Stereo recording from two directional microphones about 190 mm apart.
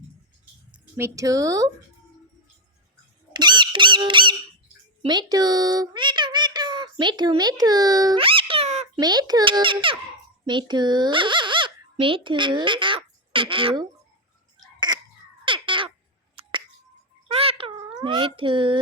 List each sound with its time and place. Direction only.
0.9 s speech: 15° right (ahead or behind)
3.3 s squeak: 25° right (ahead or behind)
5.0 s speech: 20° right (ahead or behind)
9.0 s a child's voice: 20° right (ahead or behind)
14.9 s caw: 20° right (ahead or behind)
15.4 s cat: 25° right (ahead or behind)
16.3 s a sound: 30° right (ahead or behind)